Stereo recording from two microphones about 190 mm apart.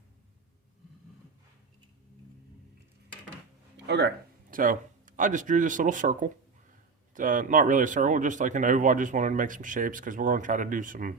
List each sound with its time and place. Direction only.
3.8 s speech: 65° right (ahead or behind)
4.5 s speech: 45° right (ahead or behind)